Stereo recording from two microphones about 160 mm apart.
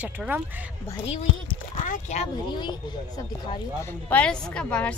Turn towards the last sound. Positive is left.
turn(degrees=5)  # may be behind; listen again after turning